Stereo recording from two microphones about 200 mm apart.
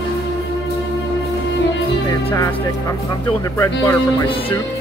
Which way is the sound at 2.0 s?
15° left (ahead or behind).